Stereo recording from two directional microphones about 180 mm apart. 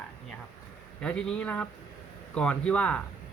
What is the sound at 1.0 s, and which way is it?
Speech, 5° left (ahead or behind).